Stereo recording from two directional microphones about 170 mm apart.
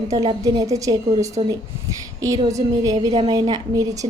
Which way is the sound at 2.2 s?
20° right (ahead or behind).